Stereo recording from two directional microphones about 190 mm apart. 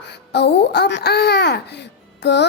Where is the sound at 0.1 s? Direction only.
60° left (ahead or behind).